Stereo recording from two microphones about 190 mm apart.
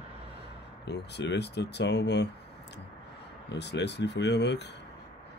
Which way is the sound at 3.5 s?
65° left (ahead or behind).